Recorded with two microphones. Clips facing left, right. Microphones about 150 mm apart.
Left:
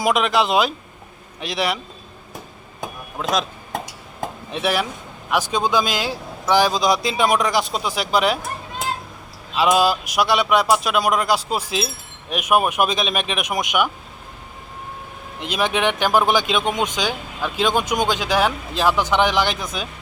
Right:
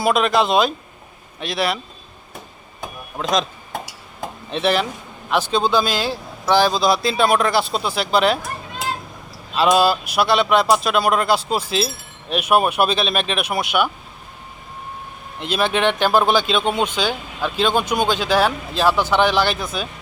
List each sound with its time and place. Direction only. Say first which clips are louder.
0.0 s speech: right 1 dB; 15° left (ahead or behind)
3.2 s speech: right 2 dB; 5° left (ahead or behind)
4.5 s speech: right 3 dB; 10° left (ahead or behind)
9.6 s speech: right 1 dB; 10° left (ahead or behind)
15.4 s speech: right 2 dB; 15° left (ahead or behind)